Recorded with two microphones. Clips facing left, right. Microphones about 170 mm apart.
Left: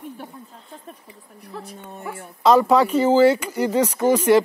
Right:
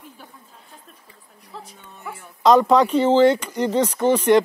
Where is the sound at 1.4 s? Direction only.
65° left (ahead or behind).